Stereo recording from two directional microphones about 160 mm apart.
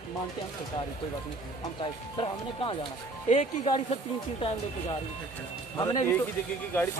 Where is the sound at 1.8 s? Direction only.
35° left (ahead or behind).